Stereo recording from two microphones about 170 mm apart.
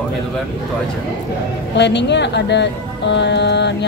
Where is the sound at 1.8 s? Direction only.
90° left.